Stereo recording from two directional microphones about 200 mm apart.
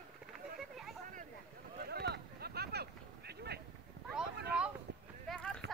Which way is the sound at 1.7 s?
50° right (ahead or behind).